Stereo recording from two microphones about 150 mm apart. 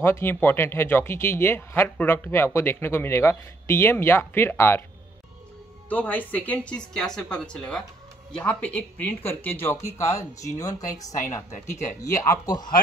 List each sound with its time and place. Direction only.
0.0 s speech: 15° left (ahead or behind)
5.9 s speech: 10° left (ahead or behind)